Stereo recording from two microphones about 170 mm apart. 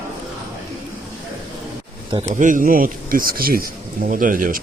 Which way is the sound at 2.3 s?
50° right (ahead or behind).